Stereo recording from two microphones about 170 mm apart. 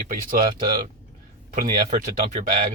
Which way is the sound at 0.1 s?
50° right (ahead or behind).